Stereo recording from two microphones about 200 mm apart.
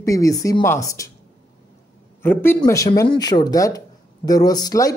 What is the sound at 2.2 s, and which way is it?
Speech, 10° left (ahead or behind).